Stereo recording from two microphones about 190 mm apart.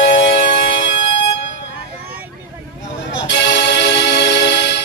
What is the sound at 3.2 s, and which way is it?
Music, 65° left (ahead or behind).